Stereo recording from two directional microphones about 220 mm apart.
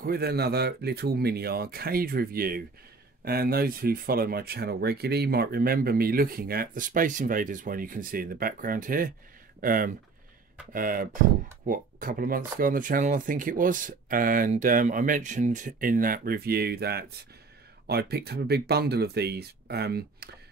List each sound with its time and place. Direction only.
0.0 s speech: 45° right (ahead or behind)